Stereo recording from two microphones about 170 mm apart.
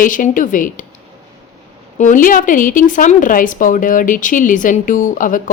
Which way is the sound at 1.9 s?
50° left (ahead or behind).